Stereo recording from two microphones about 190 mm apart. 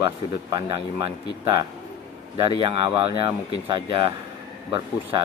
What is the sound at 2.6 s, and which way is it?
Speech, 30° right (ahead or behind).